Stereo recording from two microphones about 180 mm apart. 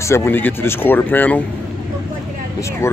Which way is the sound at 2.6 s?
15° left (ahead or behind).